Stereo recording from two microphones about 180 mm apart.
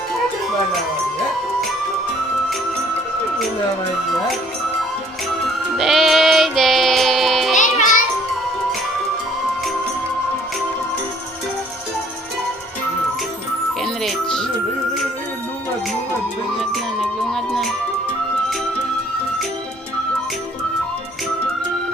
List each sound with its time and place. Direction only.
5.7 s music: centre (ahead or behind)
7.5 s music: 45° left (ahead or behind)
13.8 s music: centre (ahead or behind)
16.6 s music: centre (ahead or behind)